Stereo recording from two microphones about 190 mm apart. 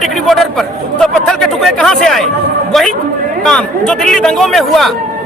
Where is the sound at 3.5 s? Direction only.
5° left (ahead or behind).